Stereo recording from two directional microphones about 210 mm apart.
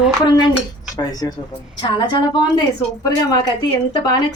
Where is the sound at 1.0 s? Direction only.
15° left (ahead or behind).